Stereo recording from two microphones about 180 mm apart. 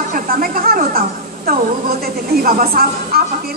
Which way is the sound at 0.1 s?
55° right (ahead or behind).